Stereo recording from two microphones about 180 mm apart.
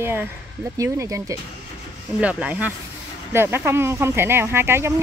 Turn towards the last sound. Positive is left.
turn(degrees=-15)  # may be behind; listen again after turning